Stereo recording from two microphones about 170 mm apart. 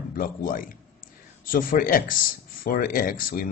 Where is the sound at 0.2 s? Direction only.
55° left (ahead or behind).